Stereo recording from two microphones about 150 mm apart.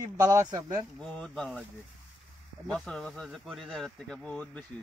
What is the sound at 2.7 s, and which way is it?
Speech, 5° left (ahead or behind).